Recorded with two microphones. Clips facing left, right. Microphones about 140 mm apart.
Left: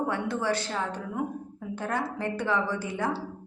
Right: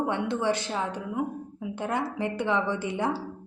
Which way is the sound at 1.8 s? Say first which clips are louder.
Right 2 dB; 20° right (ahead or behind).